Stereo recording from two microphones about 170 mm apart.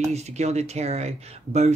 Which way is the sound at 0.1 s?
40° right (ahead or behind).